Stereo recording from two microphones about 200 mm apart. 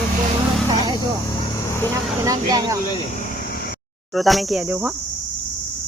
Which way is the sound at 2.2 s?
15° right (ahead or behind).